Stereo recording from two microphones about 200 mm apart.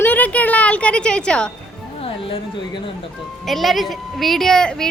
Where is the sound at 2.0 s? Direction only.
25° left (ahead or behind).